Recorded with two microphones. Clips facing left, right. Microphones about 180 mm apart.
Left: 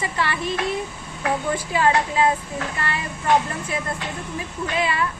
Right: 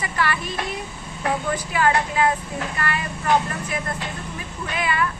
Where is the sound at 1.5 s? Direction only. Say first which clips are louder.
Left 1 dB; 25° left (ahead or behind).